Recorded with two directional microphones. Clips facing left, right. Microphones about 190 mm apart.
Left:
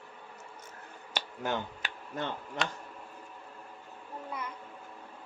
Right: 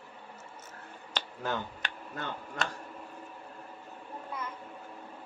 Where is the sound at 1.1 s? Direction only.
20° left (ahead or behind).